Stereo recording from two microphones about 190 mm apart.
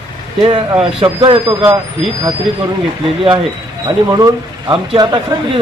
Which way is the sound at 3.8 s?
20° right (ahead or behind).